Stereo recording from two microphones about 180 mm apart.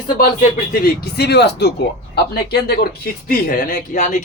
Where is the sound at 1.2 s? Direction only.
65° left (ahead or behind).